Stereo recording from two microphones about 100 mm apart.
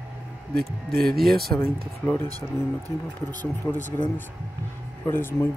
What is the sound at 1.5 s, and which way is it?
Speech, 20° left (ahead or behind).